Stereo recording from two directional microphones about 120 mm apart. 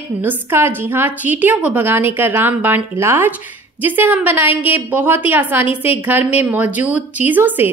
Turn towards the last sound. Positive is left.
turn(degrees=-15)  # may be behind; listen again after turning